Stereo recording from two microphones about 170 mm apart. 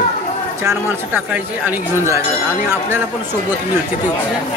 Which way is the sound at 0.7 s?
10° right (ahead or behind).